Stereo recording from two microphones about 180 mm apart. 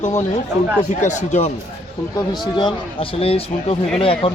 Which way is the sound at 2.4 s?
25° left (ahead or behind).